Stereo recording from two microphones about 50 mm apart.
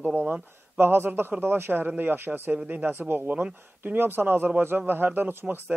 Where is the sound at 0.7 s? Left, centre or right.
Right.